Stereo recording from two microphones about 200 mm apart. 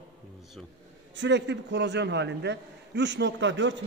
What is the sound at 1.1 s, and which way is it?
A man's voice, 60° right (ahead or behind).